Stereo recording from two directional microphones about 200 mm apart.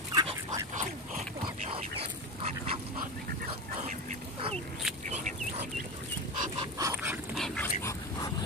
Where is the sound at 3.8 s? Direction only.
40° right (ahead or behind).